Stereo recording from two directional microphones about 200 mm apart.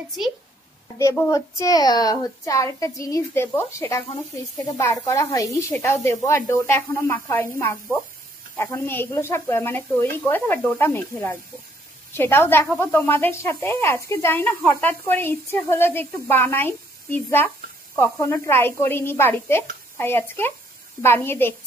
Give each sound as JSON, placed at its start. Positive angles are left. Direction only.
{"t": 0.9, "sound": "speech", "side_deg": 15}